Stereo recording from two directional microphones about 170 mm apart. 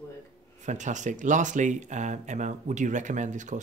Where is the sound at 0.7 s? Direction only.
45° right (ahead or behind).